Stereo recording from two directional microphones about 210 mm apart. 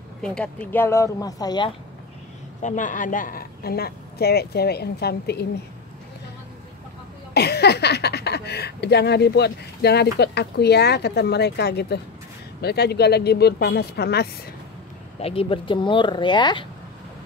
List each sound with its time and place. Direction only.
0.2 s speech: 5° left (ahead or behind)
2.6 s speech: 35° left (ahead or behind)
7.3 s speech: 50° left (ahead or behind)
15.1 s speech: 30° left (ahead or behind)